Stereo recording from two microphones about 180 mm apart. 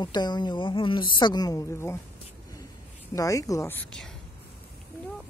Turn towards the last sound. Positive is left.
turn(degrees=15)  # may be behind; listen again after turning